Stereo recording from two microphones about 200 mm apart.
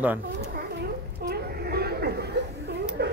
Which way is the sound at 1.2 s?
50° right (ahead or behind).